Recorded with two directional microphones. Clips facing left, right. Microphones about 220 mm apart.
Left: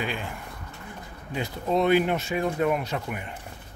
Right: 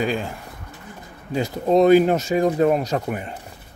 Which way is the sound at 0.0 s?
40° right (ahead or behind).